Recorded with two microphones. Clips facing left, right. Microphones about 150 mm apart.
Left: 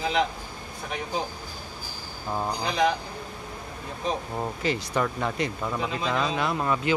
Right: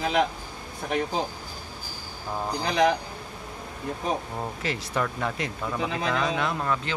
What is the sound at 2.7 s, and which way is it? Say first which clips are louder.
Speech: right 3 dB; 65° right (ahead or behind).